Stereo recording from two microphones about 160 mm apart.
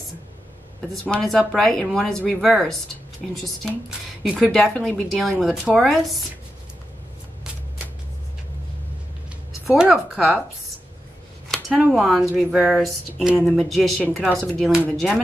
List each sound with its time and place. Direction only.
1.1 s speech: centre (ahead or behind)
4.2 s speech: centre (ahead or behind)
9.7 s speech: 5° right (ahead or behind)
11.4 s speech: centre (ahead or behind)